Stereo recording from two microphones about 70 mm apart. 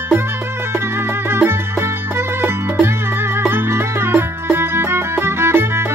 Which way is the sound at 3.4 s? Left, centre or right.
Right.